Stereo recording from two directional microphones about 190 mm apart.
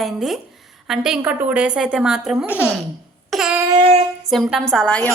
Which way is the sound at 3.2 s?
Centre (ahead or behind).